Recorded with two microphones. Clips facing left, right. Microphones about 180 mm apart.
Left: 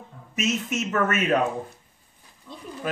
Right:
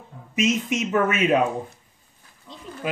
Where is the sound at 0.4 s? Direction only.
15° right (ahead or behind).